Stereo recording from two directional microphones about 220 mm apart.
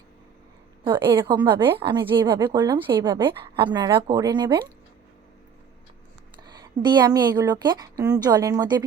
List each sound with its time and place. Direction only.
0.9 s a woman's voice: 20° right (ahead or behind)
6.4 s a woman's voice: 20° right (ahead or behind)